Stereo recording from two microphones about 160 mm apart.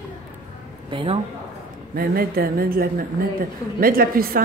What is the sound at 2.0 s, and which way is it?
A woman's voice, 65° right (ahead or behind).